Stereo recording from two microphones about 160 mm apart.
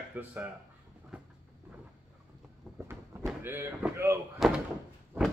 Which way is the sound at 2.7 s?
5° right (ahead or behind).